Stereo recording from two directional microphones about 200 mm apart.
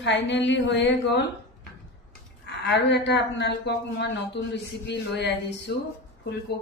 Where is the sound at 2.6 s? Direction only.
60° left (ahead or behind).